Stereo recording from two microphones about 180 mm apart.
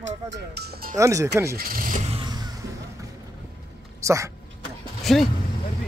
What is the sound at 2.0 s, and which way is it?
Vehicle, 25° right (ahead or behind).